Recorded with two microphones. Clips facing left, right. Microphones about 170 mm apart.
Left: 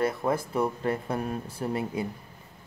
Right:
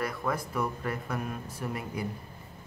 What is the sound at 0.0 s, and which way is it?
A man's voice, 25° left (ahead or behind).